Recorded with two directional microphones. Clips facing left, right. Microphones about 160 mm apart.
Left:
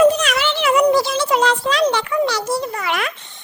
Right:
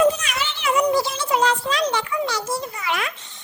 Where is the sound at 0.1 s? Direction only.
75° left (ahead or behind).